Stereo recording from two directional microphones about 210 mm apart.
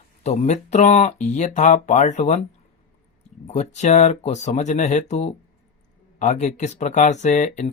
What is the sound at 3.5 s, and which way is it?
Speech, 35° left (ahead or behind).